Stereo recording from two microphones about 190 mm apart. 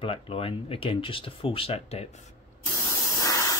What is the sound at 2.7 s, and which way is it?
Spray, 15° left (ahead or behind).